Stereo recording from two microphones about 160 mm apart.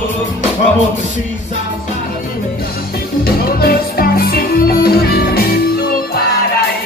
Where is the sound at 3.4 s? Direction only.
70° left (ahead or behind).